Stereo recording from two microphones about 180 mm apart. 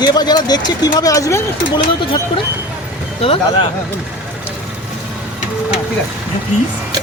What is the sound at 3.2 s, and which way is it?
Speech, 30° left (ahead or behind).